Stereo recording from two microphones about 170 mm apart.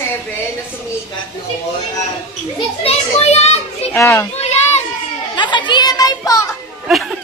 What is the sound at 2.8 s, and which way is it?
Children playing, 40° left (ahead or behind).